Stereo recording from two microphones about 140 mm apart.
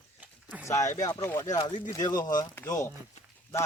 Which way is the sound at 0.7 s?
25° left (ahead or behind).